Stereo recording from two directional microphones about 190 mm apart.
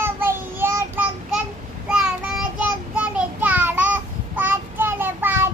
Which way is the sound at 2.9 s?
10° right (ahead or behind).